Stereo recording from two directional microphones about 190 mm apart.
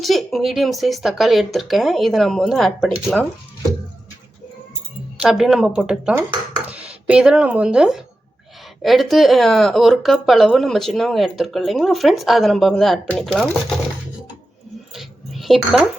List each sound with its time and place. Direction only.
0.0 s speech: centre (ahead or behind)
5.2 s speech: centre (ahead or behind)
6.1 s speech: 25° right (ahead or behind)
6.7 s speech: 5° right (ahead or behind)
14.9 s a sound: centre (ahead or behind)